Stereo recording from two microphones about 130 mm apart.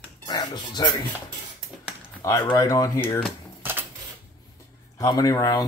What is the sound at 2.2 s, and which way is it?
Speech, 25° left (ahead or behind).